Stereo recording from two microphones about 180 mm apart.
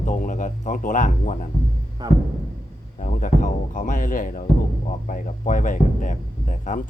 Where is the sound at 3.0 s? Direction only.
45° left (ahead or behind).